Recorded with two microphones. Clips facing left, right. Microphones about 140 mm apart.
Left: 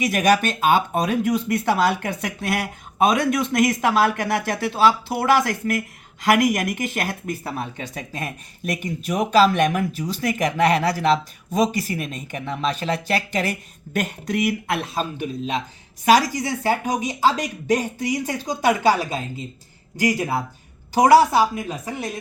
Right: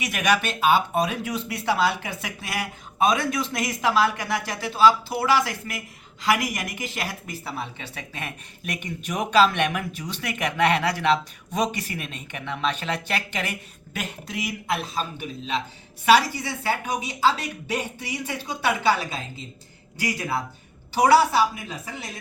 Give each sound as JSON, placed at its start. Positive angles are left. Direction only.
{"t": 0.1, "sound": "speech", "side_deg": 40}
{"t": 16.0, "sound": "speech", "side_deg": 40}